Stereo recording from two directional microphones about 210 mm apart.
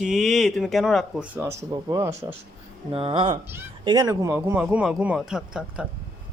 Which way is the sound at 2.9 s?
25° right (ahead or behind).